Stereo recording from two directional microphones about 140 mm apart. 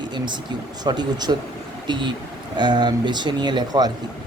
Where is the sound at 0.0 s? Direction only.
35° right (ahead or behind).